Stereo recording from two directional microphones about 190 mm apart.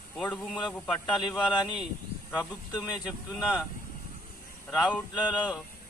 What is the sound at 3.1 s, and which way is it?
Speech, 5° right (ahead or behind).